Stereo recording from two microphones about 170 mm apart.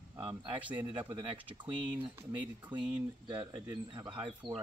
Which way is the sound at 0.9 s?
25° right (ahead or behind).